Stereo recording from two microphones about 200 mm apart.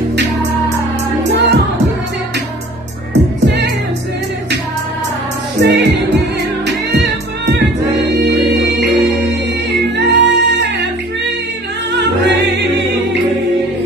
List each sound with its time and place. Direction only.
1.3 s music: 60° right (ahead or behind)
3.1 s music: 60° right (ahead or behind)
5.6 s music: 55° right (ahead or behind)
6.9 s music: 55° right (ahead or behind)
9.7 s music: 60° right (ahead or behind)
11.9 s music: 60° right (ahead or behind)